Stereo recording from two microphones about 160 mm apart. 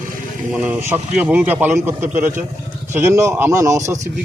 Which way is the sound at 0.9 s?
10° right (ahead or behind).